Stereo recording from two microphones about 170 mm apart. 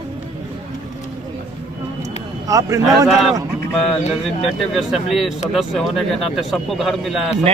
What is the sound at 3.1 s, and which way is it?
Speech, centre (ahead or behind).